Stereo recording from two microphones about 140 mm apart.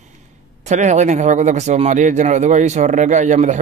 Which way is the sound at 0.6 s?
60° right (ahead or behind).